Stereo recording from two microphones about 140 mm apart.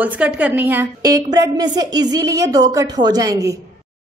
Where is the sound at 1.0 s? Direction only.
25° right (ahead or behind).